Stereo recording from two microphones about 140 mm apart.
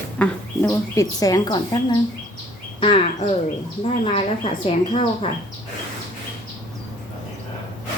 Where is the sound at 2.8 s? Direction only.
40° left (ahead or behind).